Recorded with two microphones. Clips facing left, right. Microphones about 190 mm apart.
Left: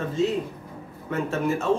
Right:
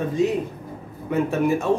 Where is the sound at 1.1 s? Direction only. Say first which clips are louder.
Right 5 dB; 15° right (ahead or behind).